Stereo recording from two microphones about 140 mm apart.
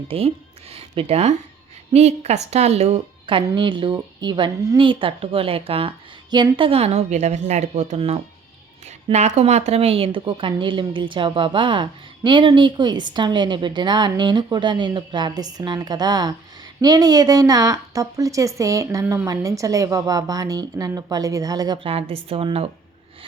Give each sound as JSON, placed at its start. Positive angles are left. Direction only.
{"t": 0.7, "sound": "a woman's voice", "side_deg": -45}
{"t": 21.8, "sound": "a woman's voice", "side_deg": -45}